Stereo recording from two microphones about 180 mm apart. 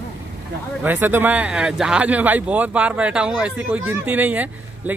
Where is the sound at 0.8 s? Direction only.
10° right (ahead or behind).